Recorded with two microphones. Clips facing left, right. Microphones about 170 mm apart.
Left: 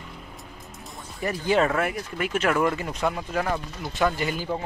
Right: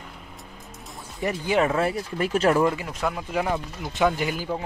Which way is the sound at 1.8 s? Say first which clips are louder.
Right 2 dB; 35° right (ahead or behind).